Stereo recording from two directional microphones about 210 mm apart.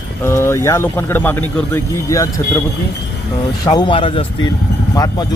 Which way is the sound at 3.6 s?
20° left (ahead or behind).